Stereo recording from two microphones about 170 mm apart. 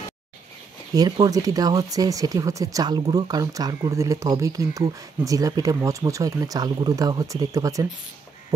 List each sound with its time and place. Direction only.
0.9 s speech: 25° right (ahead or behind)